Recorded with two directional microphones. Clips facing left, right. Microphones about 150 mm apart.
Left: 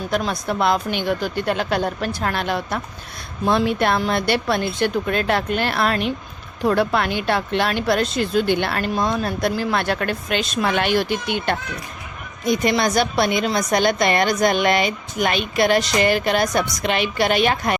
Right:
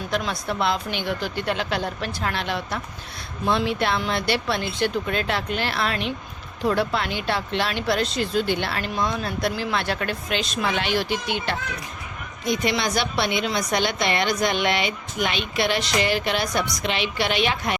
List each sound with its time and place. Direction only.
0.1 s a woman's voice: 45° left (ahead or behind)